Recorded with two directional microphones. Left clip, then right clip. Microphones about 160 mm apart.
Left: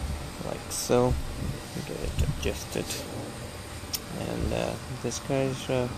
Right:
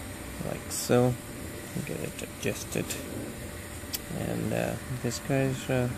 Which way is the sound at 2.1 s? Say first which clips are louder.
Left 1 dB; 50° right (ahead or behind).